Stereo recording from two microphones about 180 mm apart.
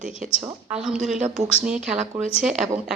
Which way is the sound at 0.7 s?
5° right (ahead or behind).